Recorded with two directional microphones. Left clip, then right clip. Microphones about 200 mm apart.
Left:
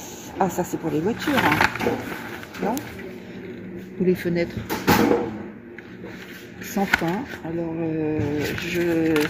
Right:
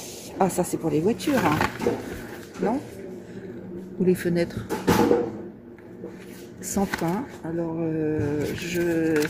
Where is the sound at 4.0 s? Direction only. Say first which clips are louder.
Left 1 dB; 10° right (ahead or behind).